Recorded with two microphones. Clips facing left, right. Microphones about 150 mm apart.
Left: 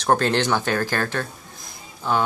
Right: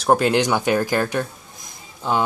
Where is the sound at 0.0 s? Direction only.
10° right (ahead or behind).